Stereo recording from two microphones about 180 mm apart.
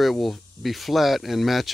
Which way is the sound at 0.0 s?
Centre (ahead or behind).